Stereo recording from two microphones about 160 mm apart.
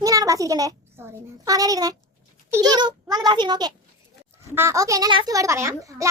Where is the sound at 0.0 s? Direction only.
20° right (ahead or behind).